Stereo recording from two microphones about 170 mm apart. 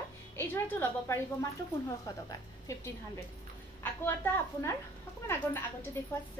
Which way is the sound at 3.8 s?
10° left (ahead or behind).